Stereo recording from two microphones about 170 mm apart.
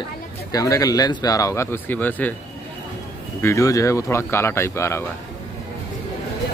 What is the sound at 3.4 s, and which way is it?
Speech, 20° left (ahead or behind).